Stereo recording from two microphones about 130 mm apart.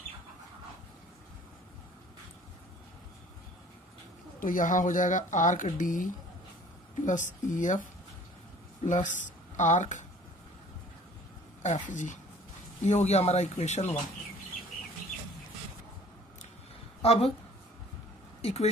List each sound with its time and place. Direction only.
4.4 s speech: 90° left
7.1 s speech: 75° left (ahead or behind)
8.8 s speech: 75° left (ahead or behind)
11.6 s speech: 65° left (ahead or behind)
12.8 s speech: 60° left (ahead or behind)
17.0 s a woman's voice: 50° left (ahead or behind)
18.4 s speech: 50° left (ahead or behind)